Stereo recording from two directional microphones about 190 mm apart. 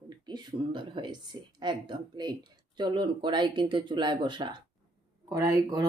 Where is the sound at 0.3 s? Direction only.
25° right (ahead or behind).